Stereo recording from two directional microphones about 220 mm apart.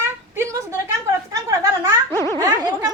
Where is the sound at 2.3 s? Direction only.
20° right (ahead or behind).